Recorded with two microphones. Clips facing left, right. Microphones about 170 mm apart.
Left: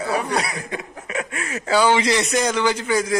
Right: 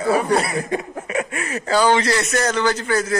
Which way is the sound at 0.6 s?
45° right (ahead or behind).